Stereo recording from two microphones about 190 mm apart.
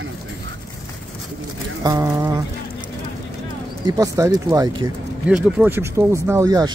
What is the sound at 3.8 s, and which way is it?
Speech, 20° right (ahead or behind).